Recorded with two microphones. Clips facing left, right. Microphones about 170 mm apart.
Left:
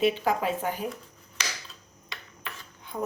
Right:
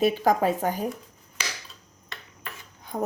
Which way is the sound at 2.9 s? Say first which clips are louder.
Right 3 dB; 45° right (ahead or behind).